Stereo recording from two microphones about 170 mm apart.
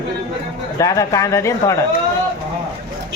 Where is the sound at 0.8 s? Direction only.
20° left (ahead or behind).